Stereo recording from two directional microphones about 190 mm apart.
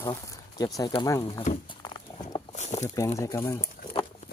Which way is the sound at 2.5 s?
35° left (ahead or behind).